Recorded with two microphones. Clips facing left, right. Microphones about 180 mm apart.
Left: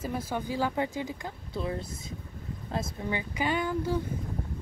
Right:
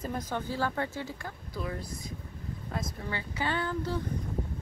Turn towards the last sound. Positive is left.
turn(degrees=15)  # may be behind; listen again after turning